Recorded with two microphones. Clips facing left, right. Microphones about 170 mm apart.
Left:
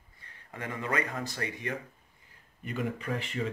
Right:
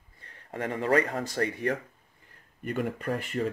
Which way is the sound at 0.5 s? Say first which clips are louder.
Right 8 dB; 40° right (ahead or behind).